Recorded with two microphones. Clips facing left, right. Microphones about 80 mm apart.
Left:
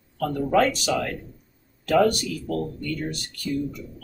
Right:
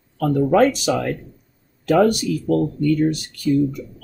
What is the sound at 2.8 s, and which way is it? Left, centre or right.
Speech, right.